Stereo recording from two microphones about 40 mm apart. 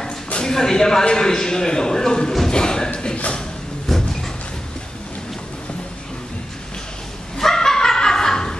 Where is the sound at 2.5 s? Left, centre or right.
Centre.